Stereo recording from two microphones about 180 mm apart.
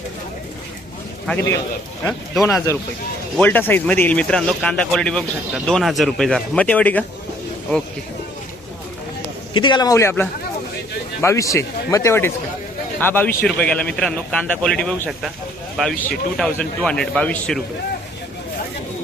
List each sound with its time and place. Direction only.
1.3 s speech: 10° left (ahead or behind)
2.7 s speech: 15° left (ahead or behind)
9.5 s a man's voice: 25° left (ahead or behind); by 17.6 s 5° left (ahead or behind)